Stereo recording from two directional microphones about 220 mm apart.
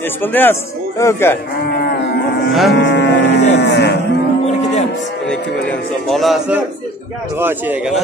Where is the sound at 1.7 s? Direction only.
45° left (ahead or behind).